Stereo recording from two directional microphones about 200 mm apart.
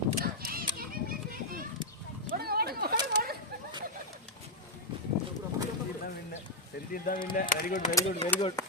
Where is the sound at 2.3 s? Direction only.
50° right (ahead or behind).